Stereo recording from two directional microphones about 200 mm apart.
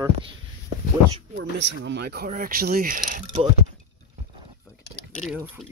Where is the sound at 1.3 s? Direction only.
65° right (ahead or behind); by 3.5 s 35° right (ahead or behind).